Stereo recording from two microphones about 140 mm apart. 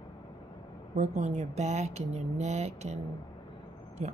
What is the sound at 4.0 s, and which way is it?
Speech, 50° right (ahead or behind).